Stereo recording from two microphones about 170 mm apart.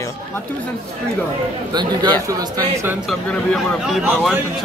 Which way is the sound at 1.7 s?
25° right (ahead or behind).